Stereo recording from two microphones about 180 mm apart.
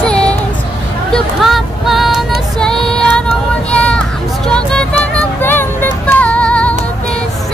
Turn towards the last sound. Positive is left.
turn(degrees=5)  # may be behind; listen again after turning